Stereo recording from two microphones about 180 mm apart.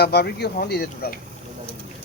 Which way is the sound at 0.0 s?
65° left (ahead or behind).